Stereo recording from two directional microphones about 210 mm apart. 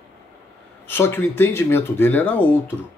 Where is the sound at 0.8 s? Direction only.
10° left (ahead or behind).